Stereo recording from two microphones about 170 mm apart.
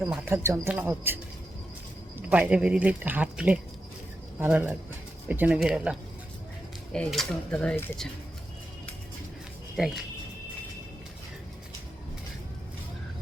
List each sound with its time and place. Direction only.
0.1 s speech: 15° right (ahead or behind); by 8.0 s 5° left (ahead or behind)
9.7 s speech: centre (ahead or behind)